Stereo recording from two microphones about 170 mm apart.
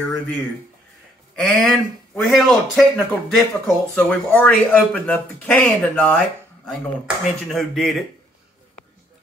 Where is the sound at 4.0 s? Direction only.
10° left (ahead or behind).